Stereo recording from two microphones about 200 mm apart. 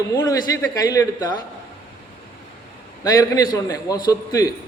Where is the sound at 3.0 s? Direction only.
20° left (ahead or behind).